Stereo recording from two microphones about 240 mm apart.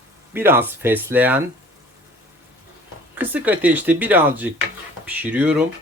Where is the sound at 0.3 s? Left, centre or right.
Centre.